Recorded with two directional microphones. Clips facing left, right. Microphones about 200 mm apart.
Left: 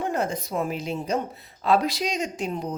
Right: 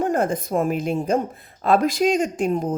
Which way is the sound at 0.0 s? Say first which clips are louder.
Right 5 dB; 50° right (ahead or behind).